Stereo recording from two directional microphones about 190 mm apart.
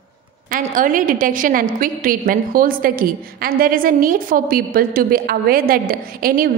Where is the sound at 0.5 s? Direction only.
45° right (ahead or behind).